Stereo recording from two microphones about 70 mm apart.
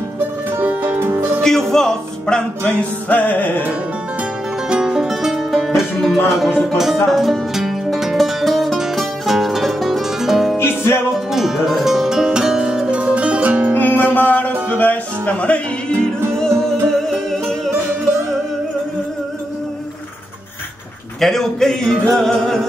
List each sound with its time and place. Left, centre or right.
0.5 s music: right
1.4 s music: centre; by 3.6 s left
4.6 s music: centre
10.6 s music: left
11.3 s music: centre
13.7 s music: left
15.9 s music: right
16.3 s music: centre
21.2 s speech: centre